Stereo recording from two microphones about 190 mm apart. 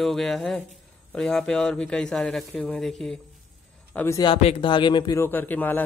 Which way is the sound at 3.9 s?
15° left (ahead or behind).